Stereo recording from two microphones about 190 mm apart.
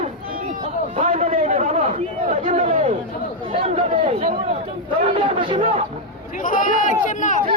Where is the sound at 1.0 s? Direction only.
35° right (ahead or behind).